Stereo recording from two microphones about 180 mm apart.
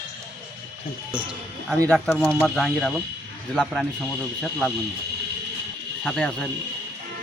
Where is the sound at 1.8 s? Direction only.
5° left (ahead or behind).